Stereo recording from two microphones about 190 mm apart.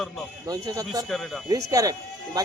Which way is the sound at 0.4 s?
20° right (ahead or behind).